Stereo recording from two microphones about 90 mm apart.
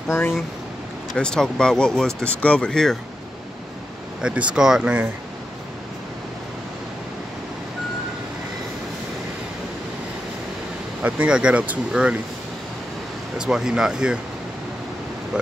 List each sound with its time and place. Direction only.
1.1 s speech: 10° left (ahead or behind)
4.2 s speech: 10° right (ahead or behind)
11.0 s speech: 15° right (ahead or behind)
13.4 s speech: 5° right (ahead or behind)